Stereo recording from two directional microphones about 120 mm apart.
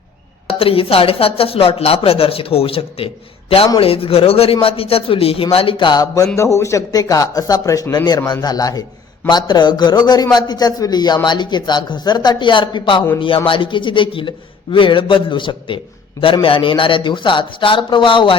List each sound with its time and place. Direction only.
0.4 s a man's voice: 50° left (ahead or behind)